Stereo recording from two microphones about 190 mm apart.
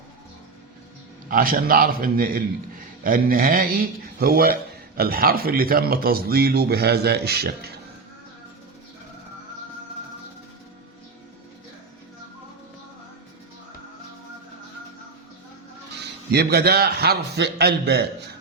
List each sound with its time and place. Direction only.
1.3 s a man's voice: 45° right (ahead or behind)
16.3 s a man's voice: 55° right (ahead or behind)